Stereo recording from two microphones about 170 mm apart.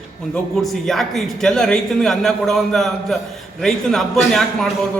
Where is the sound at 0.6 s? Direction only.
Centre (ahead or behind).